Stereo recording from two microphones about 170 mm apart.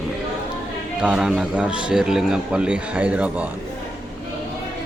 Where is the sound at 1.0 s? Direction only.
5° right (ahead or behind).